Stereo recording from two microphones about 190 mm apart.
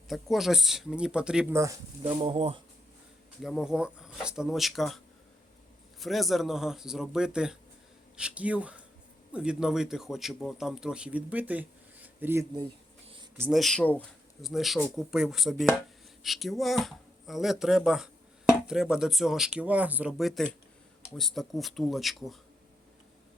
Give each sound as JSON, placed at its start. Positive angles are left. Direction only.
{"t": 0.1, "sound": "speech", "side_deg": 0}
{"t": 2.0, "sound": "speech", "side_deg": -30}
{"t": 3.4, "sound": "speech", "side_deg": 0}
{"t": 6.0, "sound": "speech", "side_deg": 0}
{"t": 13.5, "sound": "speech", "side_deg": 0}